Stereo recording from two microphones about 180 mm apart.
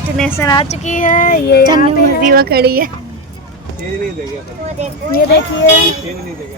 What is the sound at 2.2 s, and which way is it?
Speech, 55° right (ahead or behind).